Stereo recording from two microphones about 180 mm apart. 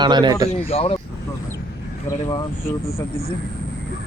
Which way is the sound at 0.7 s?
30° left (ahead or behind).